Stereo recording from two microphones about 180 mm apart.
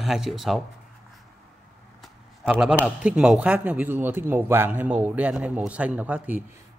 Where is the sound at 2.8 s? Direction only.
5° right (ahead or behind).